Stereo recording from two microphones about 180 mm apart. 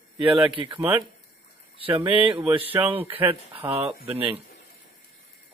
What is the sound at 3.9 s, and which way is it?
Speech, 10° right (ahead or behind).